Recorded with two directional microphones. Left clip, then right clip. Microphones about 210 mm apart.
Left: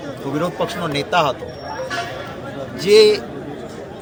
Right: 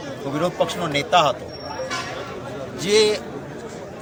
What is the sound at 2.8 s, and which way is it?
Speech, centre (ahead or behind).